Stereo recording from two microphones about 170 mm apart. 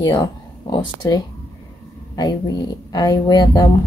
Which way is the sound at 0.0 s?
25° left (ahead or behind).